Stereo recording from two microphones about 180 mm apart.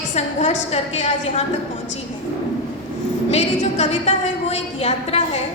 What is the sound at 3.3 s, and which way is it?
A woman's voice, 35° left (ahead or behind).